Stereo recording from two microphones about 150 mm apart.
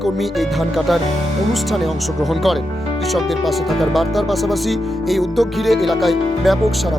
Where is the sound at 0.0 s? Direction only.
Centre (ahead or behind).